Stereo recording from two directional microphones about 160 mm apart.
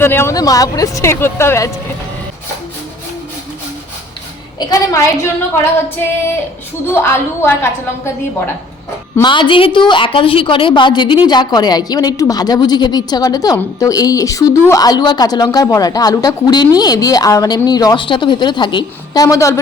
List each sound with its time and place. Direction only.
0.0 s speech: 15° left (ahead or behind)
4.6 s a woman's voice: 20° left (ahead or behind)
6.9 s speech: 15° left (ahead or behind)
9.2 s a woman's voice: 30° left (ahead or behind)